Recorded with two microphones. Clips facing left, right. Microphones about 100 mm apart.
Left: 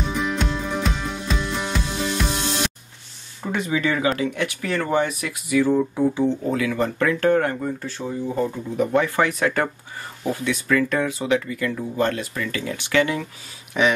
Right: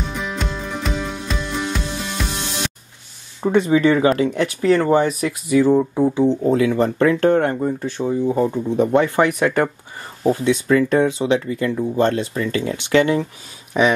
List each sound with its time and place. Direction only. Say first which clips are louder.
0.2 s music: left 2 dB; centre (ahead or behind)
3.4 s speech: right 8 dB; 30° right (ahead or behind)
10.2 s speech: right 7 dB; 30° right (ahead or behind)
13.7 s speech: right 3 dB; 20° right (ahead or behind)